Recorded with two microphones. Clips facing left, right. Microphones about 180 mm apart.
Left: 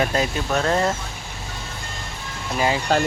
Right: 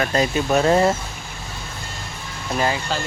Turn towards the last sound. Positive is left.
turn(degrees=55)  # may be behind; listen again after turning